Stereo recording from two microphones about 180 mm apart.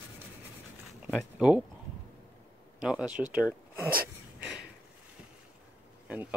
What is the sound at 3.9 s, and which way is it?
Wheeze, 55° right (ahead or behind).